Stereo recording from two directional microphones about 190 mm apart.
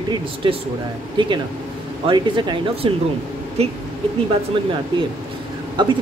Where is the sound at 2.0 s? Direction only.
25° right (ahead or behind).